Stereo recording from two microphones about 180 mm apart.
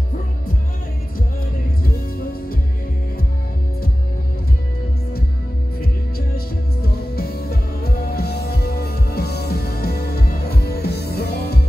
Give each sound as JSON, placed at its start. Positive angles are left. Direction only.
{"t": 5.8, "sound": "music", "side_deg": 60}